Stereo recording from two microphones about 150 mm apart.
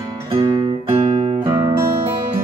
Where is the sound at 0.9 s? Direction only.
40° right (ahead or behind).